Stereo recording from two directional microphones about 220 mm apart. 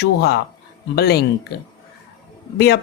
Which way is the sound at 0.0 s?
50° left (ahead or behind).